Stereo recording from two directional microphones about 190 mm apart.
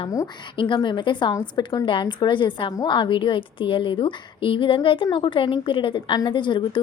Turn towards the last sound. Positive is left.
turn(degrees=25)  # may be behind; listen again after turning